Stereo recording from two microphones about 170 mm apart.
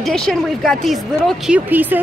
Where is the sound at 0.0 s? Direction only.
5° left (ahead or behind).